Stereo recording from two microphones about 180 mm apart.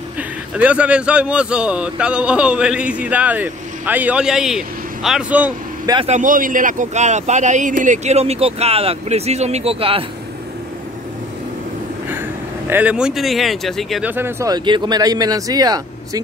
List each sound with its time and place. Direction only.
0.6 s speech: 5° right (ahead or behind)
6.0 s speech: 45° right (ahead or behind)
12.6 s speech: 10° right (ahead or behind)
14.1 s speech: 15° right (ahead or behind)